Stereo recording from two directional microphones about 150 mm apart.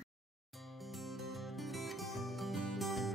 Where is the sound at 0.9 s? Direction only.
Centre (ahead or behind).